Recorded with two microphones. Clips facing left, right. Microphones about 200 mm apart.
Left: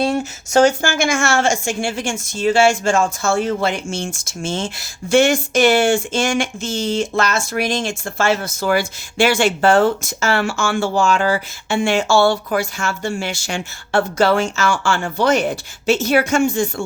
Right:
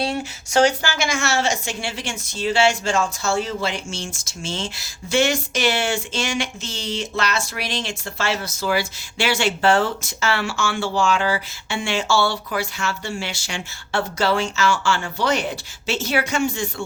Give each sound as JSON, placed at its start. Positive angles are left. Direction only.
{"t": 0.0, "sound": "a woman's voice", "side_deg": 45}